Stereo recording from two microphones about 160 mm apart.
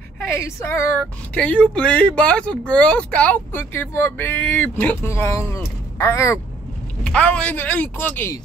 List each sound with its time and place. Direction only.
0.3 s speech: 15° left (ahead or behind)
7.0 s speech: 5° left (ahead or behind)